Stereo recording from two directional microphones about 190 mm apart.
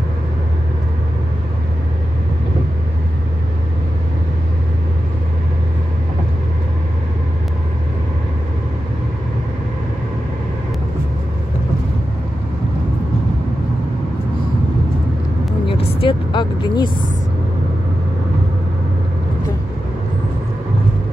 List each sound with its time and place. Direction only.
16.0 s vehicle: 25° left (ahead or behind)